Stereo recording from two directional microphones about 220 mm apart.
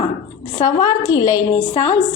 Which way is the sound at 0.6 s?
15° left (ahead or behind).